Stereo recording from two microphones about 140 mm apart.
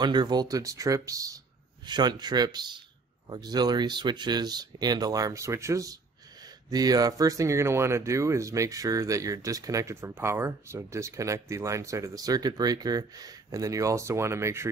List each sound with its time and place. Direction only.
0.0 s speech: 30° right (ahead or behind)